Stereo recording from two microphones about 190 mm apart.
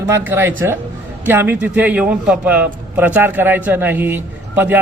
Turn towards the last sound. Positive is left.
turn(degrees=-10)  # may be behind; listen again after turning